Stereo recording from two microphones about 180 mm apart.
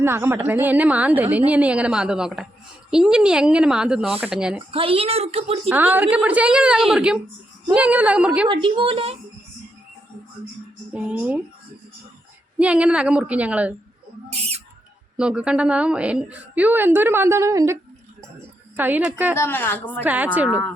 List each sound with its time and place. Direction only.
0.0 s a woman's voice: 15° right (ahead or behind)
4.7 s a woman's voice: 30° right (ahead or behind)
5.6 s a woman's voice: 10° right (ahead or behind)
8.4 s a woman's voice: 25° right (ahead or behind)
10.9 s a woman's voice: 5° right (ahead or behind)
12.5 s a woman's voice: 5° right (ahead or behind)
15.1 s a woman's voice: 5° right (ahead or behind)
18.3 s a sound: 10° right (ahead or behind)
19.4 s speech: 10° left (ahead or behind)
20.1 s a woman's voice: 10° right (ahead or behind)